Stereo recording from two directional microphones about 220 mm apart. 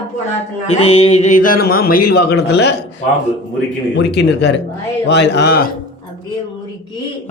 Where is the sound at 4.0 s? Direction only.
50° left (ahead or behind).